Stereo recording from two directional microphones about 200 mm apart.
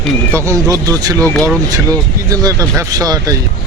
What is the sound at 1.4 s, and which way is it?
Speech, 15° right (ahead or behind).